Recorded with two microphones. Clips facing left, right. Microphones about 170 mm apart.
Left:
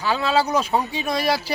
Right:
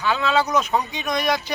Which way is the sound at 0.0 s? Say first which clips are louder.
Even; 35° left (ahead or behind).